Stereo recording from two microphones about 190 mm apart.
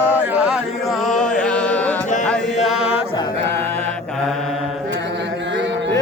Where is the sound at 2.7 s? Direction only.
Centre (ahead or behind).